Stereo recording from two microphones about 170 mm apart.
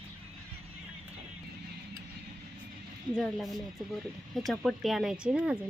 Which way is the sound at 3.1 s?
Centre (ahead or behind).